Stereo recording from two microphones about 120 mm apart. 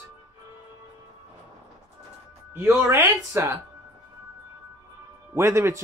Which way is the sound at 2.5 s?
20° right (ahead or behind).